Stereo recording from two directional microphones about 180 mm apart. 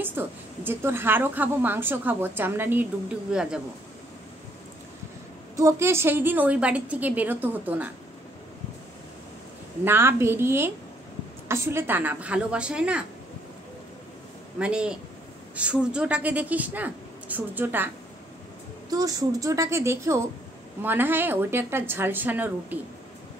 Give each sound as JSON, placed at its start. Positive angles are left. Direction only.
{"t": 0.0, "sound": "a woman's voice", "side_deg": -10}
{"t": 5.6, "sound": "a woman's voice", "side_deg": -15}
{"t": 9.8, "sound": "a woman's voice", "side_deg": -15}
{"t": 14.6, "sound": "a woman's voice", "side_deg": -5}